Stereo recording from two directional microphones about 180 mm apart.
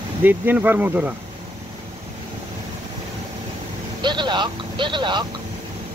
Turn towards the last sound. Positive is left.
turn(degrees=-25)  # may be behind; listen again after turning